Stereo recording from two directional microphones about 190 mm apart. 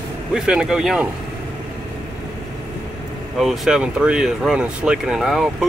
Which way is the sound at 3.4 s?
Centre (ahead or behind).